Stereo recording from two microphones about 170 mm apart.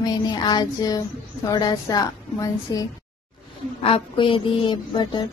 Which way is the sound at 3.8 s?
30° left (ahead or behind).